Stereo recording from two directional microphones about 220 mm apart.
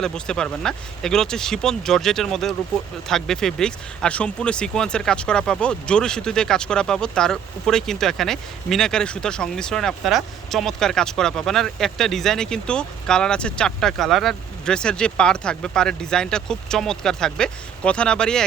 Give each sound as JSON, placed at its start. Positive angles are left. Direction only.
{"t": 0.0, "sound": "speech", "side_deg": 5}